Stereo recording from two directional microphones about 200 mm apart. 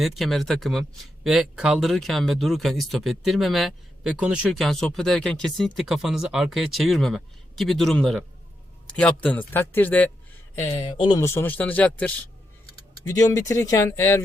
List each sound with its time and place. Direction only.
0.0 s speech: centre (ahead or behind)
10.9 s speech: 25° left (ahead or behind)
11.2 s speech: 10° left (ahead or behind)